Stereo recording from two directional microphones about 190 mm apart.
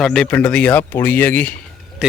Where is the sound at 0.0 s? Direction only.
5° left (ahead or behind).